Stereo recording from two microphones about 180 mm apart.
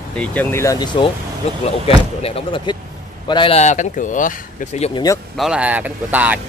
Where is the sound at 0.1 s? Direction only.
5° left (ahead or behind); by 1.1 s 25° left (ahead or behind).